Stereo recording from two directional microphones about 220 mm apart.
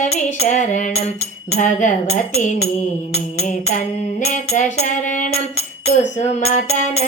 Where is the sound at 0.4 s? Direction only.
35° left (ahead or behind).